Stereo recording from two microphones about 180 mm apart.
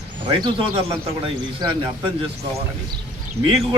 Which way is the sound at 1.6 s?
20° right (ahead or behind).